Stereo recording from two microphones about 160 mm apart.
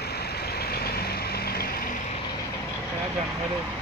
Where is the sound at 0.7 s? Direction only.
75° left (ahead or behind).